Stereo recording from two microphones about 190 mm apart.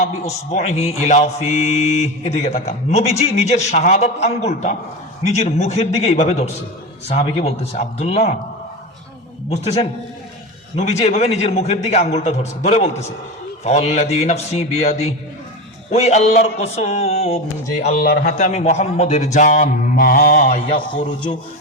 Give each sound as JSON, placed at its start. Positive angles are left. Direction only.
{"t": 0.0, "sound": "mantra", "side_deg": 35}
{"t": 10.8, "sound": "mantra", "side_deg": 35}
{"t": 17.8, "sound": "mantra", "side_deg": 45}